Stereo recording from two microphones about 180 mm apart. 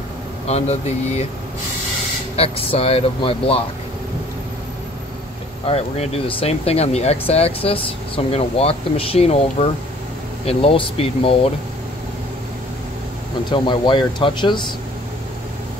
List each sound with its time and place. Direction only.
0.5 s speech: 35° left (ahead or behind)
2.3 s speech: 35° left (ahead or behind)
5.7 s speech: 30° left (ahead or behind)
13.5 s speech: 25° left (ahead or behind)